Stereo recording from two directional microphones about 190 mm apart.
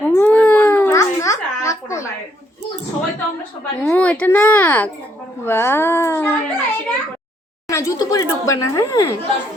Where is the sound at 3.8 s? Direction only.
5° left (ahead or behind).